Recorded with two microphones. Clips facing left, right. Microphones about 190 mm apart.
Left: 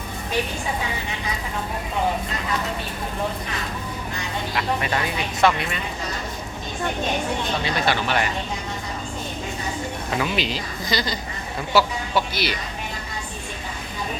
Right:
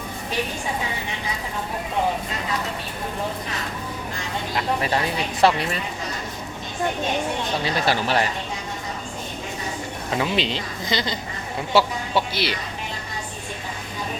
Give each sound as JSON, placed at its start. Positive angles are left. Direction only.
{"t": 4.5, "sound": "speech", "side_deg": -30}
{"t": 7.6, "sound": "speech", "side_deg": -35}
{"t": 10.2, "sound": "speech", "side_deg": -25}